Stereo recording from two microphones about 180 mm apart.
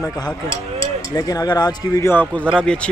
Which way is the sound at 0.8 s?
20° left (ahead or behind).